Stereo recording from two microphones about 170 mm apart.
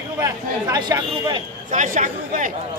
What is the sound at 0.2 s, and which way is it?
Speech, 20° right (ahead or behind).